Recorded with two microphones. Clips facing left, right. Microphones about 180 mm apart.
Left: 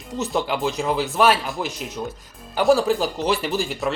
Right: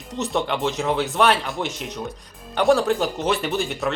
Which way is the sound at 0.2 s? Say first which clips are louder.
Even; centre (ahead or behind).